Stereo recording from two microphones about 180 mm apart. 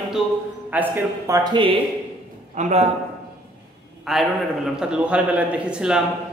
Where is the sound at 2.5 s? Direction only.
40° right (ahead or behind).